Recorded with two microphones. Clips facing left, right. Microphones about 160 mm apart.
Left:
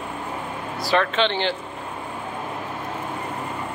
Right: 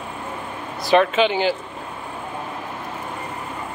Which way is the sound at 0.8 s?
20° right (ahead or behind).